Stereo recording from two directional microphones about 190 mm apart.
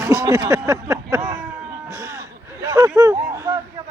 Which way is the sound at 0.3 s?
15° right (ahead or behind).